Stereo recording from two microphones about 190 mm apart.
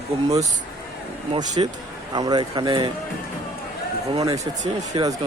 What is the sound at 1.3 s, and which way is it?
Mantra, 20° right (ahead or behind).